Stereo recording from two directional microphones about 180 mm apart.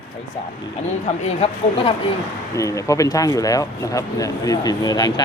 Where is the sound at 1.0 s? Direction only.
35° left (ahead or behind).